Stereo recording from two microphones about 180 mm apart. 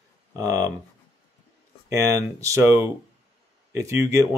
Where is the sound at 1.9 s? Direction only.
15° right (ahead or behind).